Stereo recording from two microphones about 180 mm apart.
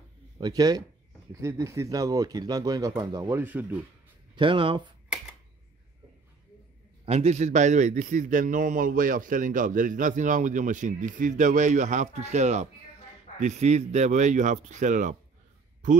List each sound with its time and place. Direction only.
0.4 s speech: 20° right (ahead or behind)
4.4 s speech: 30° right (ahead or behind)
7.1 s a man's voice: 35° right (ahead or behind)